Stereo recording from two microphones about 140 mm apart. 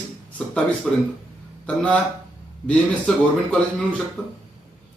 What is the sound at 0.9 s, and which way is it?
A man's voice, 5° left (ahead or behind).